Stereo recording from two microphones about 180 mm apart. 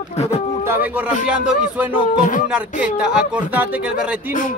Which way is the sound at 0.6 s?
10° right (ahead or behind).